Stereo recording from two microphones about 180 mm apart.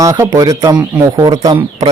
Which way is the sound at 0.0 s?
15° right (ahead or behind).